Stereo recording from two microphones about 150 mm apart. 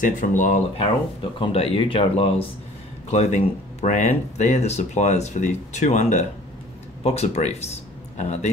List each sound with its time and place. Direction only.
0.0 s speech: 60° left (ahead or behind)
1.4 s speech: 40° left (ahead or behind)